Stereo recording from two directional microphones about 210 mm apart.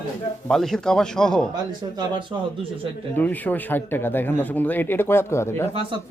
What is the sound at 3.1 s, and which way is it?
Speech, 10° left (ahead or behind).